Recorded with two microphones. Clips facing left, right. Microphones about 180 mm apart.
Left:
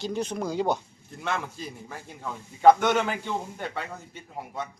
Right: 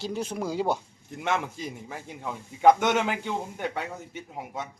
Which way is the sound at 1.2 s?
20° right (ahead or behind).